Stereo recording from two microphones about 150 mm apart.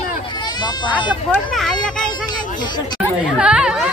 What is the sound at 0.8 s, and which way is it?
Speech, 30° left (ahead or behind).